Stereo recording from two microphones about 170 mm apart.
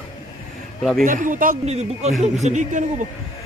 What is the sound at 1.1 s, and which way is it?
Speech, 55° right (ahead or behind).